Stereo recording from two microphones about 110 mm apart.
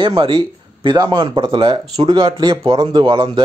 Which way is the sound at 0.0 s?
55° right (ahead or behind).